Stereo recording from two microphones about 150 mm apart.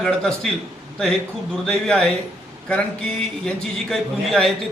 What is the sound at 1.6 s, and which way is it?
A man's voice, 5° left (ahead or behind).